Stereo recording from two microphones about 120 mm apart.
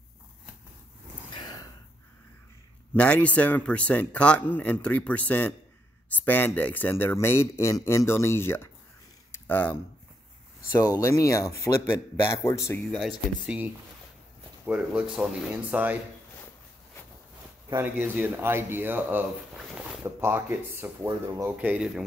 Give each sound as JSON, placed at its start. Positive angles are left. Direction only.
{"t": 2.9, "sound": "a man's voice", "side_deg": 10}
{"t": 9.3, "sound": "a sound", "side_deg": 15}
{"t": 10.8, "sound": "a man's voice", "side_deg": 30}
{"t": 12.9, "sound": "speech", "side_deg": 0}
{"t": 14.7, "sound": "speech", "side_deg": -10}
{"t": 17.7, "sound": "speech", "side_deg": -15}